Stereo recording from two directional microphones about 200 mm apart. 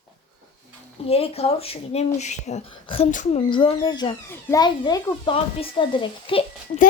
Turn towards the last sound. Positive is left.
turn(degrees=25)  # may be behind; listen again after turning